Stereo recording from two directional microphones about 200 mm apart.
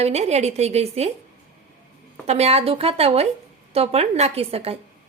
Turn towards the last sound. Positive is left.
turn(degrees=-30)  # may be behind; listen again after turning